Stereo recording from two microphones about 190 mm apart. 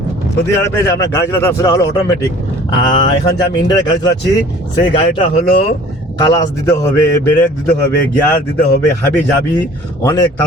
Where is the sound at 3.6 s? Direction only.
25° left (ahead or behind).